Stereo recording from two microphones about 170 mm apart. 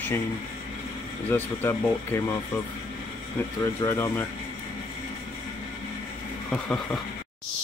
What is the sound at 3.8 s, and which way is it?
Speech, 15° left (ahead or behind).